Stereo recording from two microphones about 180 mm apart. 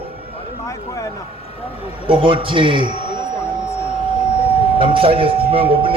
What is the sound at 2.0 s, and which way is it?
A man's voice, 30° right (ahead or behind).